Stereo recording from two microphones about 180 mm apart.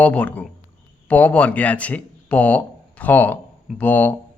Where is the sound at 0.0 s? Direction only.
5° left (ahead or behind).